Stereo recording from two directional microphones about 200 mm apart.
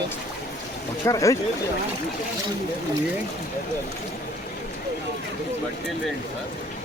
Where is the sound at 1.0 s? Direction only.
15° left (ahead or behind).